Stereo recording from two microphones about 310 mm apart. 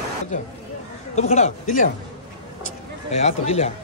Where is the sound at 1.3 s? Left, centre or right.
Left.